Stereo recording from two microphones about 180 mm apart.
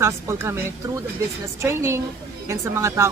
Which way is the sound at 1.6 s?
15° right (ahead or behind).